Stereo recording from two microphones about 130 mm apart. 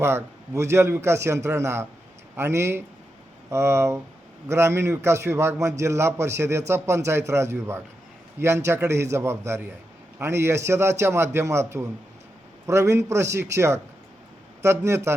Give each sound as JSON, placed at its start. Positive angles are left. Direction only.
{"t": 0.0, "sound": "a man's voice", "side_deg": -20}